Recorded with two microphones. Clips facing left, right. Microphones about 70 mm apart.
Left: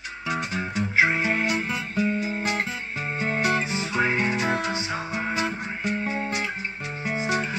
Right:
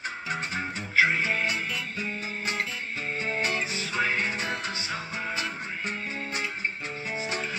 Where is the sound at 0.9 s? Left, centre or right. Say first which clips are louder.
Left 1 dB; centre.